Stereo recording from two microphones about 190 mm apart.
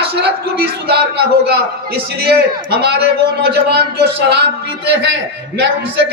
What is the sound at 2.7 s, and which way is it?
A man's voice, 60° right (ahead or behind).